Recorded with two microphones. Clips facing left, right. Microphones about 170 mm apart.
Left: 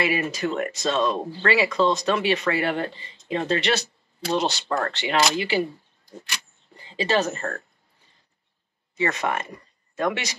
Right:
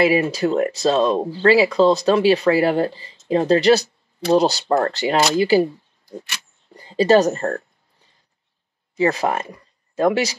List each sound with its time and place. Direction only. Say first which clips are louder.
0.0 s speech: right 8 dB; 35° right (ahead or behind)
6.0 s a sound: right 4 dB; 5° right (ahead or behind)
6.7 s speech: right 9 dB; 40° right (ahead or behind)
8.9 s speech: right 6 dB; 35° right (ahead or behind)